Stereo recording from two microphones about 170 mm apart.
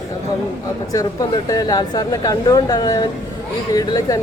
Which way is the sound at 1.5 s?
20° left (ahead or behind).